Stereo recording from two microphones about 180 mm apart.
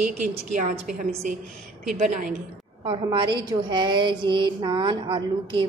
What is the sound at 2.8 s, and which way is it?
A woman's voice, 25° right (ahead or behind).